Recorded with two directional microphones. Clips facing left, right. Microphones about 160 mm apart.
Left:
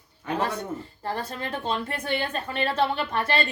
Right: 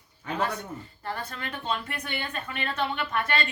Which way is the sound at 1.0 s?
30° left (ahead or behind).